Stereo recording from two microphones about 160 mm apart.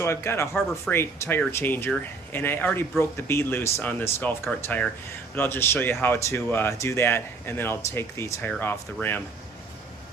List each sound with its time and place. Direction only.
0.0 s speech: 15° left (ahead or behind)